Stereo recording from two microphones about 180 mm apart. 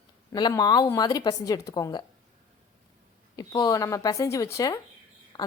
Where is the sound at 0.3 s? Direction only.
20° left (ahead or behind).